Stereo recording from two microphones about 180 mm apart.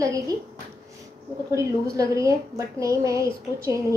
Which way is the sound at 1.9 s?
20° right (ahead or behind).